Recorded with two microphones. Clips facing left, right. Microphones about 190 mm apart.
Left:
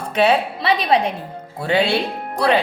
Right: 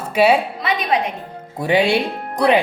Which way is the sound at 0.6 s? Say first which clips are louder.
Left 2 dB; 30° left (ahead or behind).